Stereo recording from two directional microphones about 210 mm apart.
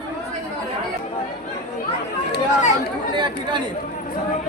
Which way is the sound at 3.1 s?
20° right (ahead or behind).